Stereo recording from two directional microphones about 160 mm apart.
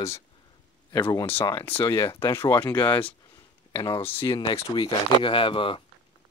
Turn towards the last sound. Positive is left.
turn(degrees=35)  # may be behind; listen again after turning